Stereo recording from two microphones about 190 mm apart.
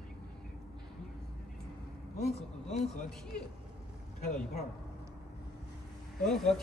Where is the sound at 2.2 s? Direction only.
35° left (ahead or behind).